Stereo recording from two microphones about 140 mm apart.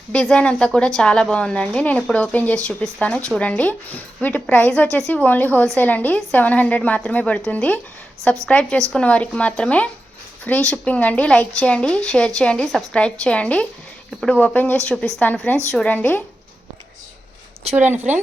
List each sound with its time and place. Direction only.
0.1 s a woman's voice: 5° left (ahead or behind)